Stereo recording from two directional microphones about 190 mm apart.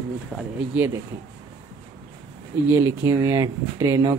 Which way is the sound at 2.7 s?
15° right (ahead or behind).